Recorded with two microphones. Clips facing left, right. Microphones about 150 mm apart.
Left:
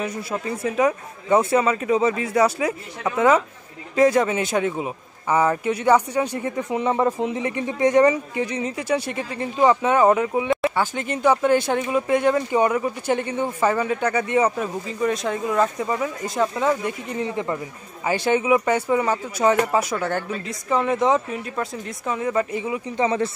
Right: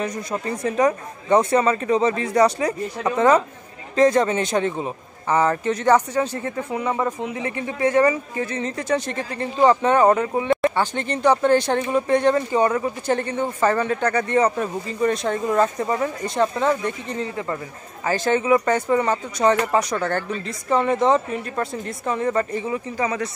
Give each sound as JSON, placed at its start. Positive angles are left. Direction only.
{"t": 0.0, "sound": "speech", "side_deg": 5}
{"t": 22.9, "sound": "speech", "side_deg": 25}